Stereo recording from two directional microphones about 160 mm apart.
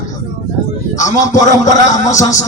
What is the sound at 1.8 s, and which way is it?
Speech, 50° left (ahead or behind).